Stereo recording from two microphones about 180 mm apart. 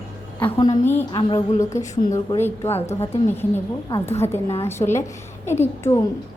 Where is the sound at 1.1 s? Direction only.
25° left (ahead or behind).